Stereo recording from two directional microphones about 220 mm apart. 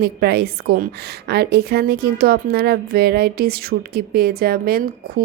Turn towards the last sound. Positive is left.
turn(degrees=-45)  # may be behind; listen again after turning